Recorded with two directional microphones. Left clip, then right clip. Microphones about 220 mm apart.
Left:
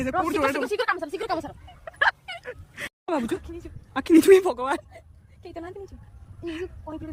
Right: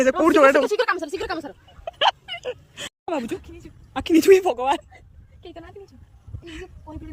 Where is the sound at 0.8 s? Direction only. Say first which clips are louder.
Right 3 dB; 45° right (ahead or behind).